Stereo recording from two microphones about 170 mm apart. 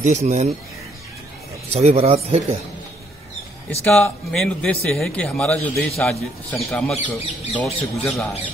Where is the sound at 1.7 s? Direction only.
40° right (ahead or behind).